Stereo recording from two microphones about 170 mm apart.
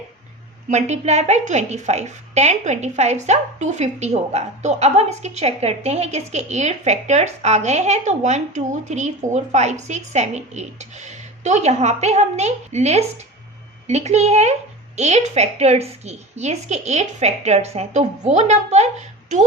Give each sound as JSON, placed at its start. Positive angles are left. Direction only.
{"t": 0.7, "sound": "a woman's voice", "side_deg": -40}